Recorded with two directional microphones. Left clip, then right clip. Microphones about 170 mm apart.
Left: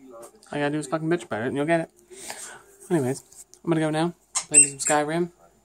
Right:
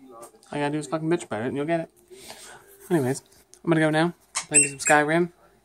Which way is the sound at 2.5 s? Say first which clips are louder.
Right 1 dB; centre (ahead or behind).